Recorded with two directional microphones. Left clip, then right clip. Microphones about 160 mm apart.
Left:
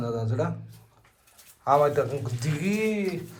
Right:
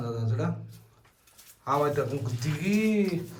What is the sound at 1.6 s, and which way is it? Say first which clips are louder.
A man's voice: left 5 dB; centre (ahead or behind).